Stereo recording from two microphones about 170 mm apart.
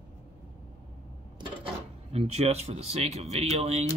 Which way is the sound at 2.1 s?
40° right (ahead or behind).